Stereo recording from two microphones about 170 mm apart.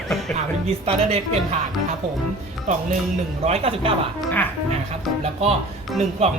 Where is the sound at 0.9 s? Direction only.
35° right (ahead or behind).